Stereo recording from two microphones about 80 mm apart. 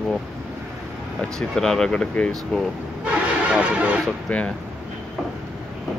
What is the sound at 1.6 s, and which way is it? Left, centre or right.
Speech, centre.